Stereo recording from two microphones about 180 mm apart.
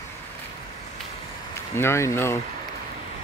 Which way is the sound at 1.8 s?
15° left (ahead or behind).